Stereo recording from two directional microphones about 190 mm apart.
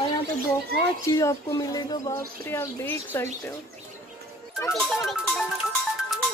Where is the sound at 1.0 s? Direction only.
15° left (ahead or behind).